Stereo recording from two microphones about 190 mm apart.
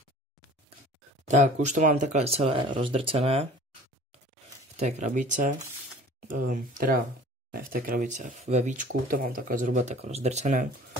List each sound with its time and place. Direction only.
1.2 s speech: 40° right (ahead or behind)
4.7 s speech: 35° right (ahead or behind)